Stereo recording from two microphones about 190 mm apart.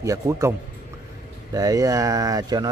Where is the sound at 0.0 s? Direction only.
15° right (ahead or behind).